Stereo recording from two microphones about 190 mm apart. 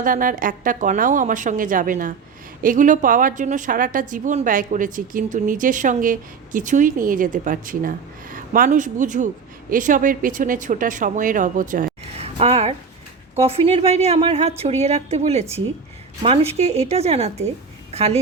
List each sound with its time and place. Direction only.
0.0 s a woman's voice: 45° right (ahead or behind)
12.1 s a sound: 30° right (ahead or behind)
13.5 s speech: 30° right (ahead or behind)